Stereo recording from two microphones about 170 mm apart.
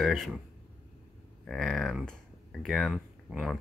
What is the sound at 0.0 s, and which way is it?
Speech, centre (ahead or behind).